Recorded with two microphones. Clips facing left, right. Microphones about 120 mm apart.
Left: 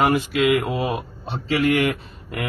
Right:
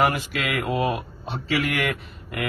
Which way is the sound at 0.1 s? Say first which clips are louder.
Left 9 dB; 25° left (ahead or behind).